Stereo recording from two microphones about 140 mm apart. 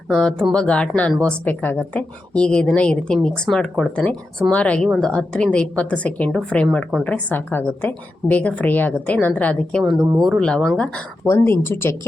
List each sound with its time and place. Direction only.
0.1 s a woman's voice: 5° left (ahead or behind)
10.0 s speech: 30° right (ahead or behind)
10.2 s speech: 5° left (ahead or behind)
11.6 s a woman's voice: 15° left (ahead or behind)